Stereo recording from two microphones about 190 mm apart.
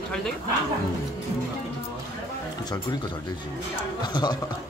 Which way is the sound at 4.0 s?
20° left (ahead or behind).